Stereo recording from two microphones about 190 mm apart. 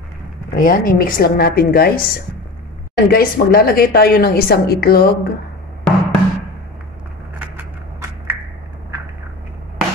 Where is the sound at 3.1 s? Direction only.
50° left (ahead or behind).